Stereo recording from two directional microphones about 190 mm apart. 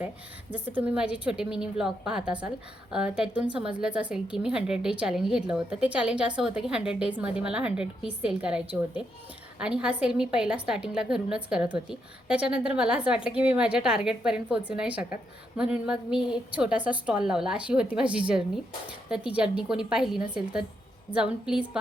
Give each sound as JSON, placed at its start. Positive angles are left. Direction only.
{"t": 0.5, "sound": "a woman's voice", "side_deg": -10}